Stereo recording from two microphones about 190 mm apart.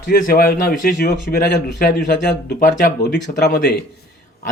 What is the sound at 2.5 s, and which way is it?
A man's voice, 55° left (ahead or behind).